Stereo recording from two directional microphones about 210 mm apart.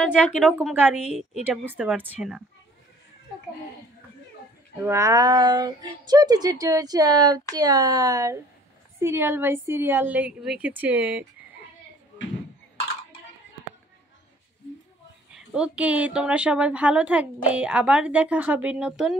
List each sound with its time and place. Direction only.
0.4 s speech: 5° right (ahead or behind)
4.7 s speech: 10° right (ahead or behind)
15.3 s a woman's voice: 5° right (ahead or behind)